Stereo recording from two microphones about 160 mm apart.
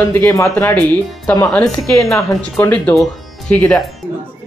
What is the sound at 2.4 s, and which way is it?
Speech, 15° left (ahead or behind).